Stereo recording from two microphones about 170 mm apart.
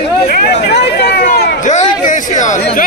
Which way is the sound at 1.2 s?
50° left (ahead or behind).